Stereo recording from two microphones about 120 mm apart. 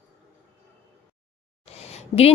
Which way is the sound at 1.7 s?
60° left (ahead or behind).